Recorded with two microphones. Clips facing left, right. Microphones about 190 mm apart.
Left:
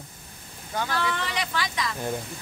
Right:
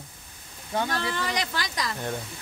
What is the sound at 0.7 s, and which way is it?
Speech, 35° right (ahead or behind).